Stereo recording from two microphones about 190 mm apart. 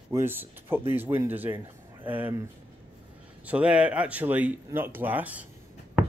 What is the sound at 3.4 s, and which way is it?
Speech, 5° right (ahead or behind).